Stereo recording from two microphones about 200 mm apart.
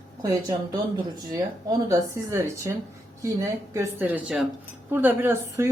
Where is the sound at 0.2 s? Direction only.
20° right (ahead or behind).